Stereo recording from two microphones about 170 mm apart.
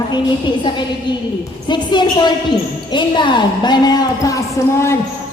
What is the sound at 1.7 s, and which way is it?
A woman's voice, 25° left (ahead or behind).